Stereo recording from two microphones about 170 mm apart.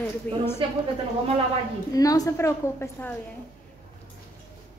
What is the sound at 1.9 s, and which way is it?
A child's voice, 20° left (ahead or behind).